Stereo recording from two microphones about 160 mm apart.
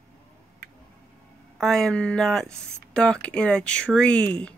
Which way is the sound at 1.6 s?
5° left (ahead or behind).